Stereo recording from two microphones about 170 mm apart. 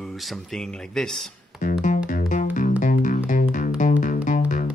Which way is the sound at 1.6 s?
50° left (ahead or behind).